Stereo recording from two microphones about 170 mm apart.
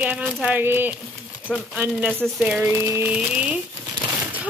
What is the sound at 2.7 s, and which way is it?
Speech, 15° right (ahead or behind).